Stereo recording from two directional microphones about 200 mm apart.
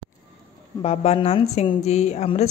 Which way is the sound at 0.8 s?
30° left (ahead or behind).